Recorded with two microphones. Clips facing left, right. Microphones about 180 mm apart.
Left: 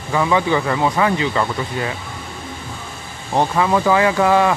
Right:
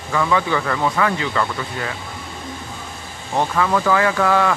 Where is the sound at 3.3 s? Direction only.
20° left (ahead or behind).